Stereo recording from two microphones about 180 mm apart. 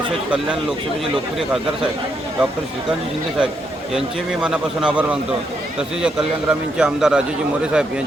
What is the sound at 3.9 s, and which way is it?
A man's voice, 5° right (ahead or behind).